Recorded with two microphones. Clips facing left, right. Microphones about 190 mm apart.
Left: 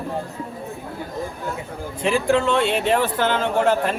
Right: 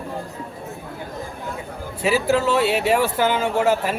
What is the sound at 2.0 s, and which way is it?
Speech, 5° right (ahead or behind).